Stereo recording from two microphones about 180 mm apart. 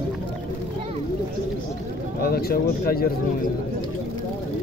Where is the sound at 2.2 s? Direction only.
60° left (ahead or behind).